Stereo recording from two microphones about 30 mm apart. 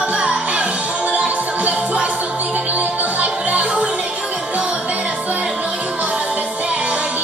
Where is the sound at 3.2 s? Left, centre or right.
Right.